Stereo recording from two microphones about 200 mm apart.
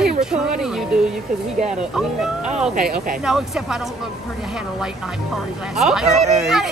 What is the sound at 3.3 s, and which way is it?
Speech, centre (ahead or behind).